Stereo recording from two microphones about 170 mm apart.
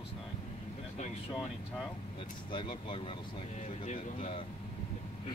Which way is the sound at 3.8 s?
50° left (ahead or behind).